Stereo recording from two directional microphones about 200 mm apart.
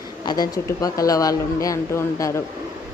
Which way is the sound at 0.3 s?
20° left (ahead or behind).